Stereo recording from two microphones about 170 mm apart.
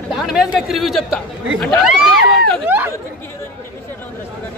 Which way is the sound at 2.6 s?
10° right (ahead or behind).